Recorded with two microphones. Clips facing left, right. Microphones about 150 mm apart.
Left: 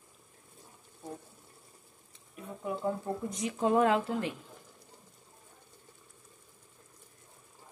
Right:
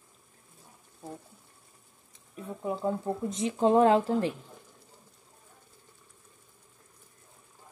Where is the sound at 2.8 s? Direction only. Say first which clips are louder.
Right 3 dB; 25° right (ahead or behind).